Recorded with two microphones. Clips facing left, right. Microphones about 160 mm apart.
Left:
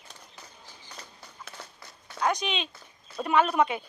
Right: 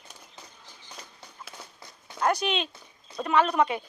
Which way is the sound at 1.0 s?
15° right (ahead or behind).